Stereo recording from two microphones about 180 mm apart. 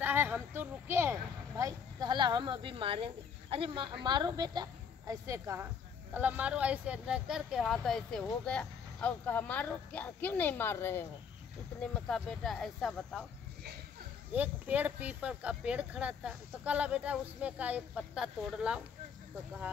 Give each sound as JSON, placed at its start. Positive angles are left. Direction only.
{"t": 0.0, "sound": "speech", "side_deg": -10}
{"t": 11.8, "sound": "speech", "side_deg": 0}
{"t": 14.3, "sound": "speech", "side_deg": -10}